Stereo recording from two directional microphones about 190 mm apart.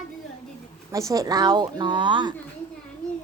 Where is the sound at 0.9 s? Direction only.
15° right (ahead or behind).